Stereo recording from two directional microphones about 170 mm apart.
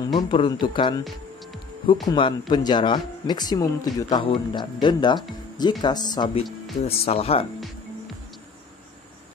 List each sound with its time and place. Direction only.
0.0 s speech: 25° left (ahead or behind)
2.0 s speech: 25° left (ahead or behind)
6.8 s speech: 35° left (ahead or behind)